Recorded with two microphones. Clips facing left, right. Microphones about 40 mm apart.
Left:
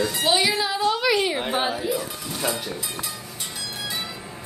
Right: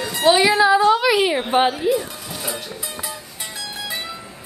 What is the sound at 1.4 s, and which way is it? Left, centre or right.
Speech, right.